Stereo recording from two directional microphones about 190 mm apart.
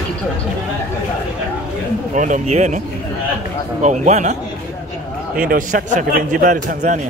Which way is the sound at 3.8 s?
40° right (ahead or behind).